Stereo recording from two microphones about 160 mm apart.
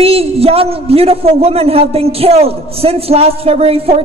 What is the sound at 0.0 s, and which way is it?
A man's voice, 40° right (ahead or behind).